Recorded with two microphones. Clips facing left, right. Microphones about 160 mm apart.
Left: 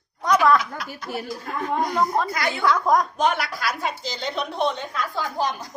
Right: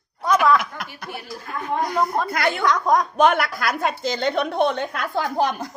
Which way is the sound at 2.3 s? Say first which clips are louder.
Right 4 dB; 60° right (ahead or behind).